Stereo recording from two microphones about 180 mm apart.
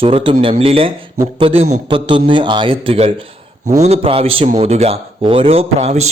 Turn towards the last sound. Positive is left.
turn(degrees=-35)  # may be behind; listen again after turning